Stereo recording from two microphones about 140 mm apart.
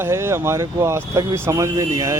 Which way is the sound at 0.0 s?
20° right (ahead or behind).